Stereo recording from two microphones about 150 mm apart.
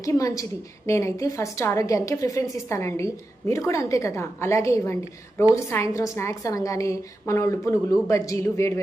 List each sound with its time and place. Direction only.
0.0 s a woman's voice: 20° left (ahead or behind)